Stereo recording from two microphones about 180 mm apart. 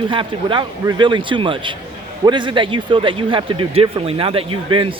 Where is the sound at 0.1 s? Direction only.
25° right (ahead or behind).